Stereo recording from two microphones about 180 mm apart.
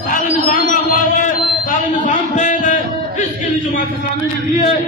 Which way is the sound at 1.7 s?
45° left (ahead or behind).